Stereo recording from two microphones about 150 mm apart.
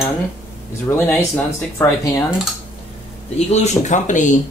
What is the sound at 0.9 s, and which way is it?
Speech, 15° left (ahead or behind).